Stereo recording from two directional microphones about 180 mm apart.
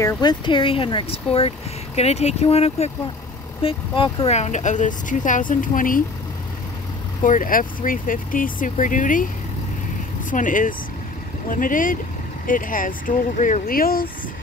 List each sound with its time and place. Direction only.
0.0 s speech: 25° left (ahead or behind); by 6.0 s 50° left (ahead or behind)
7.2 s speech: 50° left (ahead or behind)
10.3 s speech: 45° left (ahead or behind)